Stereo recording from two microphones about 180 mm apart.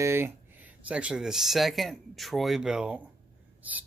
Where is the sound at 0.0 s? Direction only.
10° right (ahead or behind).